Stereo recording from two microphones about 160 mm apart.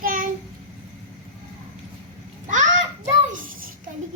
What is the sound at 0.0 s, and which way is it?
Child singing, 60° right (ahead or behind).